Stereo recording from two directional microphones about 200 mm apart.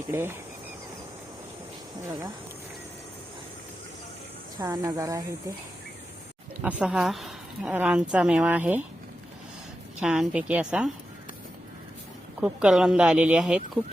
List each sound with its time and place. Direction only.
0.1 s speech: 10° right (ahead or behind)
2.0 s speech: 15° right (ahead or behind)
4.6 s speech: 15° right (ahead or behind)
6.6 s a woman's voice: 5° right (ahead or behind)
10.0 s a woman's voice: 5° right (ahead or behind)
12.4 s a woman's voice: 5° right (ahead or behind)